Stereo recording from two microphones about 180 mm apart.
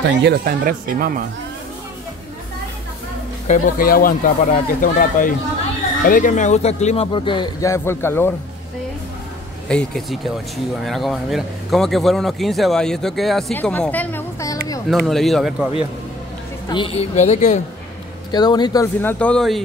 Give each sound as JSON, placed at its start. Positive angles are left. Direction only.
{"t": 0.2, "sound": "speech", "side_deg": -60}
{"t": 3.4, "sound": "speech", "side_deg": 45}
{"t": 9.7, "sound": "speech", "side_deg": 5}
{"t": 14.9, "sound": "speech", "side_deg": 0}
{"t": 16.6, "sound": "speech", "side_deg": 25}
{"t": 18.3, "sound": "speech", "side_deg": 25}
{"t": 18.9, "sound": "speech", "side_deg": 10}